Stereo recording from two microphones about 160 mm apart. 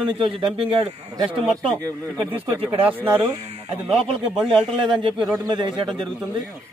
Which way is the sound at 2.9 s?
10° right (ahead or behind).